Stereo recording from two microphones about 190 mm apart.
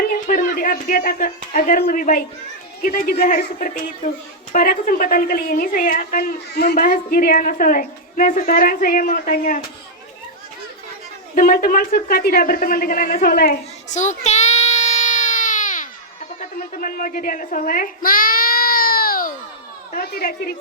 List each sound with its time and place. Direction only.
0.0 s a woman's voice: 50° left (ahead or behind)
3.6 s a woman's voice: 45° left (ahead or behind); by 6.7 s 60° left (ahead or behind)
6.7 s a woman's voice: 45° left (ahead or behind)
11.3 s a man's voice: 50° left (ahead or behind)
16.4 s a sound: 45° left (ahead or behind)
19.9 s a woman's voice: 55° left (ahead or behind)